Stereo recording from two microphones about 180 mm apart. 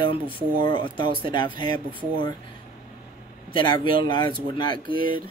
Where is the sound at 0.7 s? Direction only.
30° left (ahead or behind).